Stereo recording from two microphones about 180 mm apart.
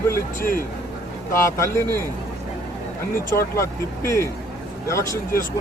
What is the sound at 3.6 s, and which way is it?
Speech, 15° left (ahead or behind).